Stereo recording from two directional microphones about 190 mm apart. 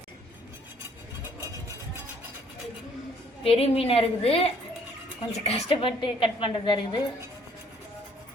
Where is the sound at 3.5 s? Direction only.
30° left (ahead or behind).